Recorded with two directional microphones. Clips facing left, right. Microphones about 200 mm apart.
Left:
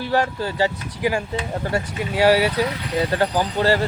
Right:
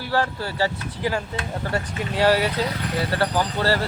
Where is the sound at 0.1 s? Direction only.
15° left (ahead or behind).